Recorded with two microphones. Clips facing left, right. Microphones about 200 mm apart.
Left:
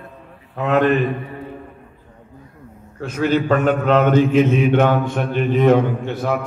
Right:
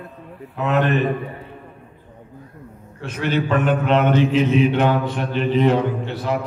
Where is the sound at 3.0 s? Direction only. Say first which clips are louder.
Left 4 dB; 45° left (ahead or behind).